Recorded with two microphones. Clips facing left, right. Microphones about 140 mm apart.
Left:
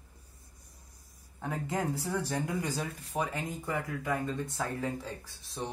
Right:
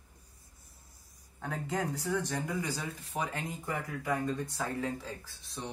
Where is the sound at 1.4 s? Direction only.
5° left (ahead or behind).